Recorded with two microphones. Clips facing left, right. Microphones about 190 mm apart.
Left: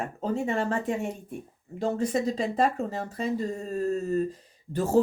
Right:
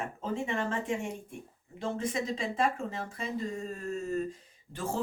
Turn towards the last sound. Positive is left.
turn(degrees=40)  # may be behind; listen again after turning